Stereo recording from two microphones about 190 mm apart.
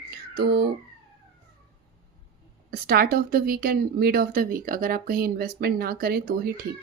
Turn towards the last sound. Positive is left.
turn(degrees=-55)  # may be behind; listen again after turning